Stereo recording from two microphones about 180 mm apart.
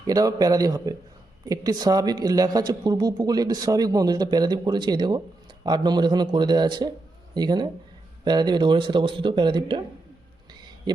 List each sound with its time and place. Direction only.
0.1 s speech: 20° right (ahead or behind)